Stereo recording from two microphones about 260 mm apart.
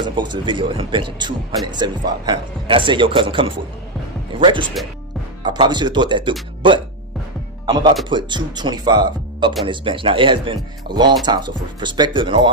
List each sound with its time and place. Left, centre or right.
0.0 s speech: centre
7.6 s speech: centre